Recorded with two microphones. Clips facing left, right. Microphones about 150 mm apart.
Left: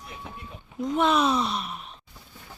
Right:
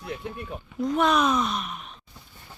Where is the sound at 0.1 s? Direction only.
80° right.